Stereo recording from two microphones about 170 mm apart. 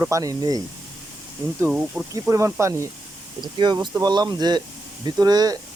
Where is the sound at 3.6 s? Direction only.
25° right (ahead or behind).